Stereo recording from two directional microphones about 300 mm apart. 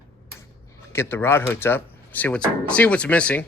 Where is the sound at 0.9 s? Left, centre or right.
Centre.